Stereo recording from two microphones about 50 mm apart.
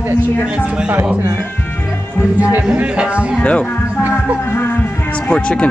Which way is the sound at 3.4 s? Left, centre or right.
Left.